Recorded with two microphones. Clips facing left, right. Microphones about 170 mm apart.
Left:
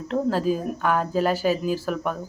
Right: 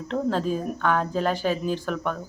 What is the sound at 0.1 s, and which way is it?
Speech, 5° left (ahead or behind).